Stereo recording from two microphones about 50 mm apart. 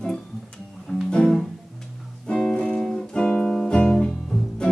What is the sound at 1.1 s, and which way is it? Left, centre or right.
Music, centre.